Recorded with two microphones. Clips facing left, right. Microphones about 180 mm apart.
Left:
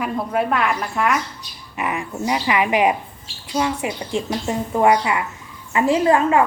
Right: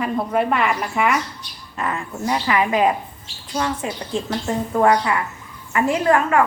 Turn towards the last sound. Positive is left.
turn(degrees=20)  # may be behind; listen again after turning